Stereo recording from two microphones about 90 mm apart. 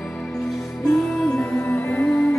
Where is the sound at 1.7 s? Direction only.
15° left (ahead or behind).